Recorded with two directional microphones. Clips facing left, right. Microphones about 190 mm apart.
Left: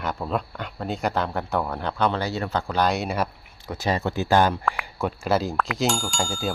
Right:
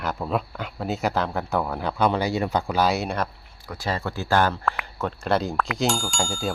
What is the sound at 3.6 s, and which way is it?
Speech, 20° left (ahead or behind).